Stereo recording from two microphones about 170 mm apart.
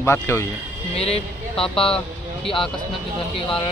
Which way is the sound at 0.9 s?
35° left (ahead or behind).